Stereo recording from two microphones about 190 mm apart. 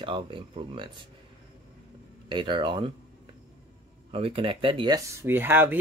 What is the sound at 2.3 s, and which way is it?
Speech, 25° right (ahead or behind).